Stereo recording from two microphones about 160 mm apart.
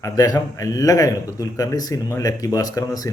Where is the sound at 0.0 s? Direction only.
20° left (ahead or behind).